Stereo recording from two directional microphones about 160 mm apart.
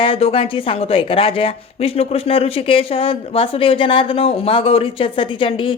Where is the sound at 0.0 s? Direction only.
35° left (ahead or behind).